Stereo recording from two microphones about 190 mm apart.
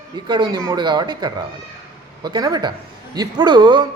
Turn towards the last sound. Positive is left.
turn(degrees=-25)  # may be behind; listen again after turning